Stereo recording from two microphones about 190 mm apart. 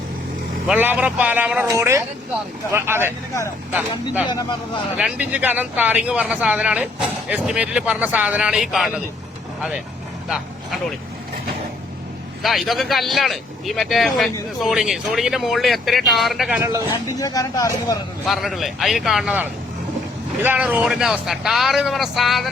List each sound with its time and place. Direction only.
0.7 s speech: 10° right (ahead or behind)
10.2 s vehicle: 5° right (ahead or behind)
12.4 s speech: centre (ahead or behind)
16.6 s speech: 15° right (ahead or behind)
16.9 s speech: 20° left (ahead or behind)
18.3 s speech: centre (ahead or behind)